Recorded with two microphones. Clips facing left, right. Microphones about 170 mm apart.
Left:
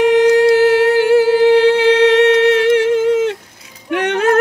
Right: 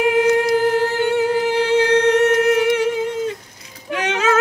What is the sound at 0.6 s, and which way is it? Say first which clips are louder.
Humming: left 6 dB; 90° left.